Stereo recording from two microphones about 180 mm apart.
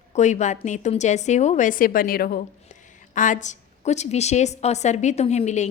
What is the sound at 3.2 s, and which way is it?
A woman's voice, 45° left (ahead or behind).